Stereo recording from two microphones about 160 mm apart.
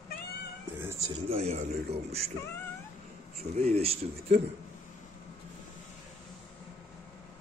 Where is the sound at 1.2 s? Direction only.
40° right (ahead or behind).